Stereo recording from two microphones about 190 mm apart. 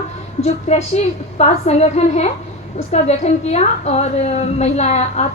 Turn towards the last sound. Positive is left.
turn(degrees=35)  # may be behind; listen again after turning